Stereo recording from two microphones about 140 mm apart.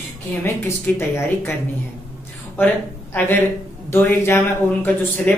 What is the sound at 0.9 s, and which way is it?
A woman's voice, 15° left (ahead or behind).